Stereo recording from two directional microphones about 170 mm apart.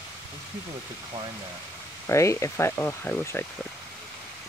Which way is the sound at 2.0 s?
15° left (ahead or behind).